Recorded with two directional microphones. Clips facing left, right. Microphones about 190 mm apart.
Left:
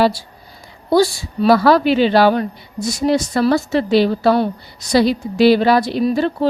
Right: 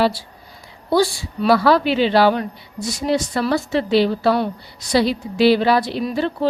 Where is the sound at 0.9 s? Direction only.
40° left (ahead or behind).